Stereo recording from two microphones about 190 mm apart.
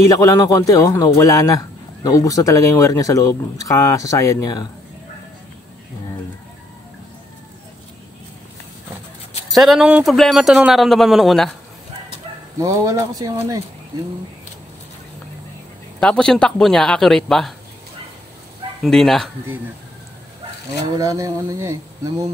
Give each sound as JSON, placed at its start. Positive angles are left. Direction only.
{"t": 0.1, "sound": "a man's voice", "side_deg": 15}
{"t": 9.5, "sound": "a man's voice", "side_deg": 0}
{"t": 12.5, "sound": "speech", "side_deg": -15}
{"t": 16.0, "sound": "a man's voice", "side_deg": 5}
{"t": 18.8, "sound": "a man's voice", "side_deg": 0}
{"t": 20.9, "sound": "speech", "side_deg": -20}